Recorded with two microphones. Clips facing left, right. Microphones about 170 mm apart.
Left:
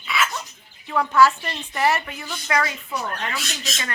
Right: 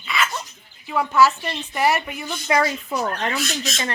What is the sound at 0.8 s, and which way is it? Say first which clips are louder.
Speech: even; 5° right (ahead or behind).